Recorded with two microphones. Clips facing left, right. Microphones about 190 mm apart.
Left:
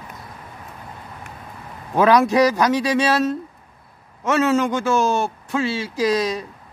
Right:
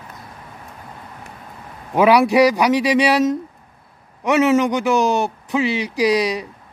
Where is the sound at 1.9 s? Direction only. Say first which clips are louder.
Right 2 dB; 15° right (ahead or behind).